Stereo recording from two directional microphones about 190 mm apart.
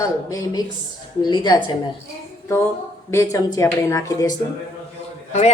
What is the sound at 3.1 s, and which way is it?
Speech, 15° left (ahead or behind).